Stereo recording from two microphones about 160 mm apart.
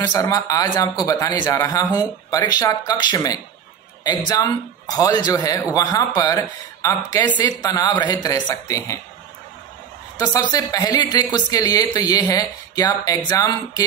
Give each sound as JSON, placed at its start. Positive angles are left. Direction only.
{"t": 0.0, "sound": "speech", "side_deg": 25}
{"t": 10.1, "sound": "a woman's voice", "side_deg": 20}